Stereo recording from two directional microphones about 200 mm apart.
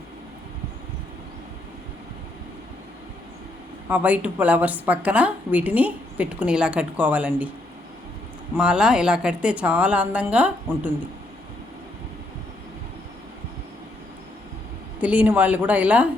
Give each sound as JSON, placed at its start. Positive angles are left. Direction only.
{"t": 3.8, "sound": "a woman's voice", "side_deg": -10}
{"t": 8.5, "sound": "a woman's voice", "side_deg": -5}
{"t": 15.0, "sound": "a woman's voice", "side_deg": -5}